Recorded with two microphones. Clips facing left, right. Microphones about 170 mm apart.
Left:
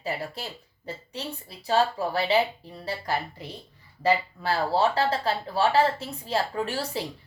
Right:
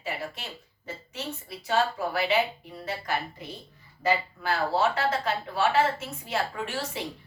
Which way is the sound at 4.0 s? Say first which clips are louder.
Left 3 dB; 30° left (ahead or behind).